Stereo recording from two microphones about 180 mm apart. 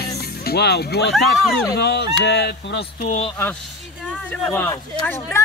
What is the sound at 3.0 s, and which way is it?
Speech, 35° left (ahead or behind).